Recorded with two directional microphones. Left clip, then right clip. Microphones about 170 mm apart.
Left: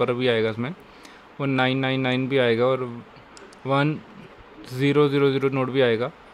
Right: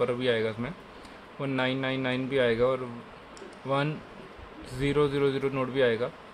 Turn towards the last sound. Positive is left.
turn(degrees=65)  # may be behind; listen again after turning